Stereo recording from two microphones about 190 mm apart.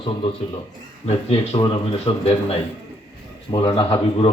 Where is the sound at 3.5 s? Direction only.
25° left (ahead or behind).